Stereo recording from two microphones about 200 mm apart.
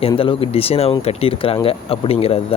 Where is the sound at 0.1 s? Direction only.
25° left (ahead or behind).